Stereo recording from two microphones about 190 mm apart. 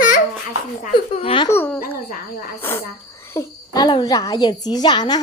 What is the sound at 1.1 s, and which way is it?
Speech, 30° left (ahead or behind).